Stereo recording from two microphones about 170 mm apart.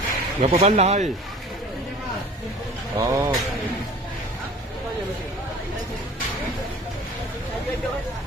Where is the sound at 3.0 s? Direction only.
20° right (ahead or behind).